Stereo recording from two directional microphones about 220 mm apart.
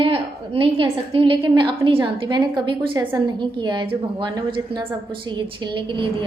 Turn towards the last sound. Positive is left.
turn(degrees=-20)  # may be behind; listen again after turning